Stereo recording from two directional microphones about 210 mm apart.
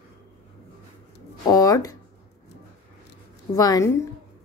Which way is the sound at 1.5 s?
15° left (ahead or behind).